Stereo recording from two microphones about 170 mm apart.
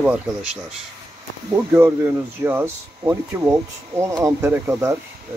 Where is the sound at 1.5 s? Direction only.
15° right (ahead or behind).